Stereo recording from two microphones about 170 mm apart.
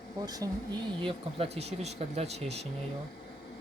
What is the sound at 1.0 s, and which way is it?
Speech, 35° right (ahead or behind).